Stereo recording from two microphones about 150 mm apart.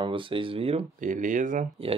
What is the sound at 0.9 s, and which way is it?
Speech, 60° right (ahead or behind).